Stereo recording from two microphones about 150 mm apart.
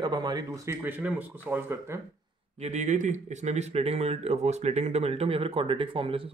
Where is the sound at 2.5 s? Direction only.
50° right (ahead or behind).